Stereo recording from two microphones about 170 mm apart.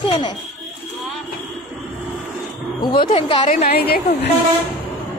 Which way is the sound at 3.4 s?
45° left (ahead or behind).